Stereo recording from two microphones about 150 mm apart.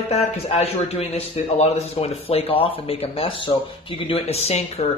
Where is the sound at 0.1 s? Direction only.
45° left (ahead or behind).